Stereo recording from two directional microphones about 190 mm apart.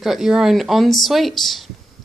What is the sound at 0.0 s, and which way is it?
Speech, centre (ahead or behind).